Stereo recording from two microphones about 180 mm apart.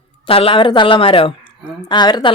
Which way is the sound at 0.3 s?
30° left (ahead or behind).